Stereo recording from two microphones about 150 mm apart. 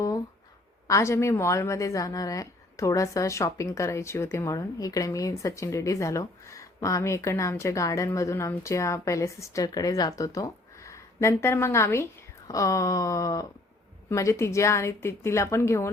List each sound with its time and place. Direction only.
0.9 s a woman's voice: 20° left (ahead or behind)